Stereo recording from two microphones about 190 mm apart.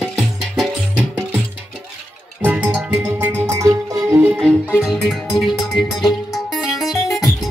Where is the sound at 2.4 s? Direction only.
5° right (ahead or behind).